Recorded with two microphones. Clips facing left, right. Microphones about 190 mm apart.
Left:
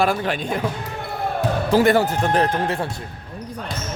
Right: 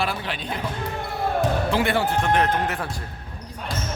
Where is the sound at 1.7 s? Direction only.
40° left (ahead or behind).